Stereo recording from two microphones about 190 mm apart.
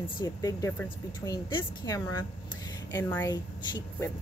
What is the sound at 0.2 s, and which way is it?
A woman's voice, 20° left (ahead or behind).